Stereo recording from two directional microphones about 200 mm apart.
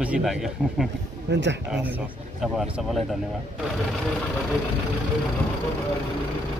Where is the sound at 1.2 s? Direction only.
60° right (ahead or behind).